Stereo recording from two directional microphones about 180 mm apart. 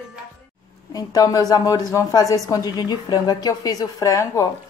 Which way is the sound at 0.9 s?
20° left (ahead or behind).